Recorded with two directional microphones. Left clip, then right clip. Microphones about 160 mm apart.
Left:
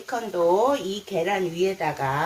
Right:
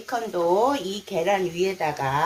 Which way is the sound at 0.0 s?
40° right (ahead or behind).